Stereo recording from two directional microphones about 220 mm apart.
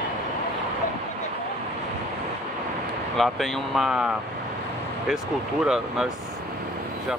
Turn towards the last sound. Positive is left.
turn(degrees=-5)  # may be behind; listen again after turning